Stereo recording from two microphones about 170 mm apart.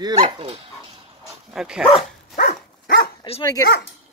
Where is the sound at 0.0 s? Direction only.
30° right (ahead or behind).